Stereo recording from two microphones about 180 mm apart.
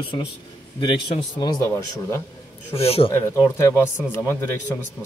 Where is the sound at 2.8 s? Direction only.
35° left (ahead or behind).